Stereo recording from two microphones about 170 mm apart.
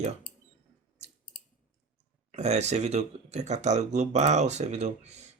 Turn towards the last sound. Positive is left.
turn(degrees=-40)  # may be behind; listen again after turning